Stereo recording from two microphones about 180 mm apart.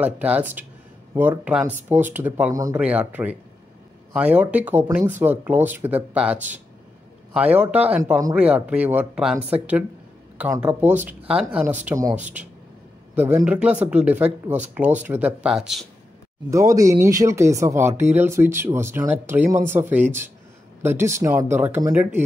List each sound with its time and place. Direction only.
0.0 s speech: 10° right (ahead or behind)
16.4 s speech: 20° right (ahead or behind)